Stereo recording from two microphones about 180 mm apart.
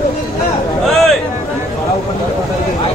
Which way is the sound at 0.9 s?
Centre (ahead or behind).